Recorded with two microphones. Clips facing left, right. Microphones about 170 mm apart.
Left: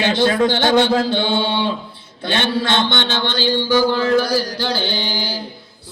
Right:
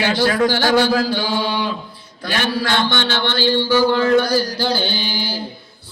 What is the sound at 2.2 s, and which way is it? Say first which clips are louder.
Mantra: left 2 dB; 25° left (ahead or behind).